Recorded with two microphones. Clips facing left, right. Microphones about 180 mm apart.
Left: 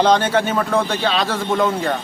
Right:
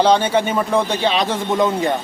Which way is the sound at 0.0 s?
10° right (ahead or behind).